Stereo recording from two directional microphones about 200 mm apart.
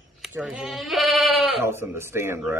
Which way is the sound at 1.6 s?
10° right (ahead or behind).